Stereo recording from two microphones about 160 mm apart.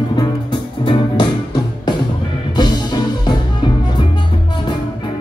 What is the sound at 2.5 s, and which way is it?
Music, 25° left (ahead or behind).